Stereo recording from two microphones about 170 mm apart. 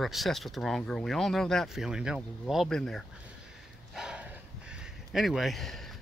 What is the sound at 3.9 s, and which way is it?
Dog, 5° right (ahead or behind).